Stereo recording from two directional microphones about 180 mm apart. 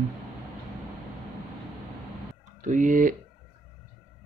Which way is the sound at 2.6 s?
45° right (ahead or behind).